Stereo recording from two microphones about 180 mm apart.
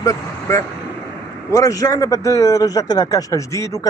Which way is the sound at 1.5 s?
20° left (ahead or behind).